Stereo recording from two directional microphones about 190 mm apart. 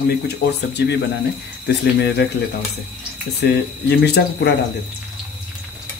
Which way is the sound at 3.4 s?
55° left (ahead or behind).